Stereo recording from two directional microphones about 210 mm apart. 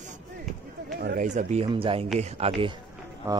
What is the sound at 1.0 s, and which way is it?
Speech, 40° right (ahead or behind).